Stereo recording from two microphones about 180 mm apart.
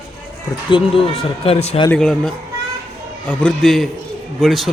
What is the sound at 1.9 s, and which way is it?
A man's voice, 5° left (ahead or behind).